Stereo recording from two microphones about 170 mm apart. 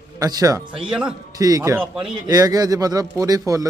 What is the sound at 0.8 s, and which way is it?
Speech, 5° right (ahead or behind).